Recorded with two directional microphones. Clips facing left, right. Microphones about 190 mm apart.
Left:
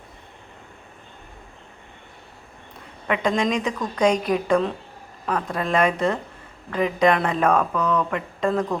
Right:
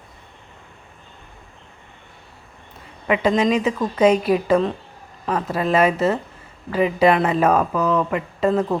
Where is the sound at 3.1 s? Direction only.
5° right (ahead or behind).